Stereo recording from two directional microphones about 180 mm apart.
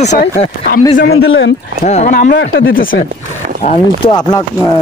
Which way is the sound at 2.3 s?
90° left.